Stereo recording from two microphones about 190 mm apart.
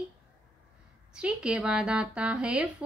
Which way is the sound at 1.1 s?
5° right (ahead or behind).